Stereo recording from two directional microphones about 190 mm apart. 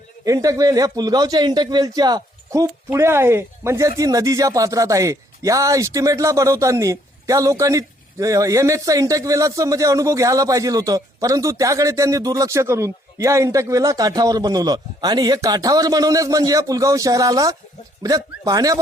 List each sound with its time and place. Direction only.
0.3 s a man's voice: 15° right (ahead or behind)